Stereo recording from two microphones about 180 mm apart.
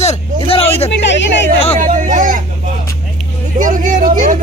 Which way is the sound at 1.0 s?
80° left.